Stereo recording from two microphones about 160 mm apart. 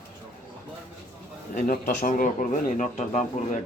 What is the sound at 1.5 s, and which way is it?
A man's voice, 55° left (ahead or behind).